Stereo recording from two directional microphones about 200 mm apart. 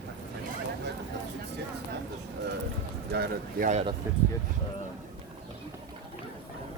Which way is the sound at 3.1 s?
50° right (ahead or behind).